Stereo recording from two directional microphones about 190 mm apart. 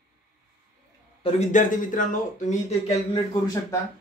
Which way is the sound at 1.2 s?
40° left (ahead or behind).